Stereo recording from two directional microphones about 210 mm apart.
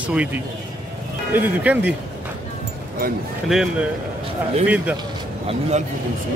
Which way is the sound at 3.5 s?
Centre (ahead or behind).